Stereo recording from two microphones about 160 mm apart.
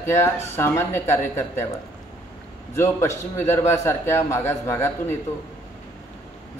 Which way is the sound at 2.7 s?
15° left (ahead or behind).